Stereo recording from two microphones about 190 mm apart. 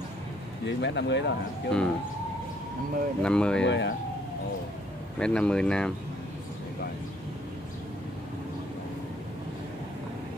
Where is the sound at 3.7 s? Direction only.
70° left (ahead or behind).